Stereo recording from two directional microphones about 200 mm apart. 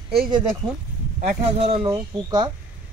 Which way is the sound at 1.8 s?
20° right (ahead or behind).